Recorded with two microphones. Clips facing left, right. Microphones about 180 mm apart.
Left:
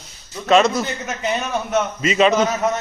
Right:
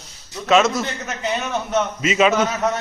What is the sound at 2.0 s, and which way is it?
Speech, 5° right (ahead or behind).